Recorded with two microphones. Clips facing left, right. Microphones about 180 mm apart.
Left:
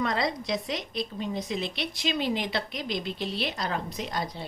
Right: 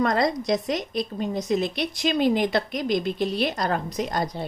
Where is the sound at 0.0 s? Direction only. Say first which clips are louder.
Right 6 dB; 45° right (ahead or behind).